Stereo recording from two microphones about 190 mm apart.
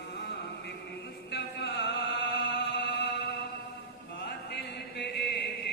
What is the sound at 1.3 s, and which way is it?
Music, 65° left (ahead or behind).